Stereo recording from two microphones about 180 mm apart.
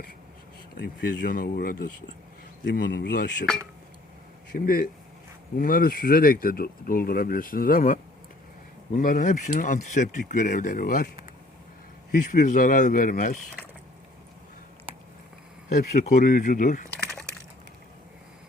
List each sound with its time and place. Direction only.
0.8 s speech: 55° left (ahead or behind)
2.6 s speech: 70° left (ahead or behind)
4.5 s speech: 55° left (ahead or behind)
12.1 s speech: 50° left (ahead or behind)
15.7 s speech: 55° left (ahead or behind)